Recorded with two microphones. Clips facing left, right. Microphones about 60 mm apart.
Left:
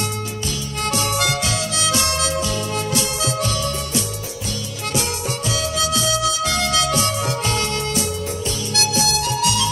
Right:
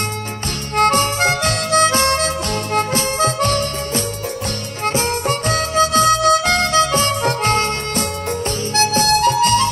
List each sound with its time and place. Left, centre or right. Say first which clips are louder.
0.7 s harmonica: right 8 dB; right
4.8 s music: right 6 dB; right